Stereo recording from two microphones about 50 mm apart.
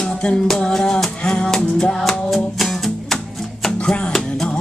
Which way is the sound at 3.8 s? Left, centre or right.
Centre.